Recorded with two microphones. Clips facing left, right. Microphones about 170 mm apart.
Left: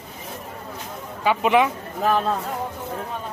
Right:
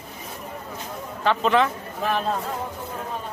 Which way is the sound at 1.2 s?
10° left (ahead or behind).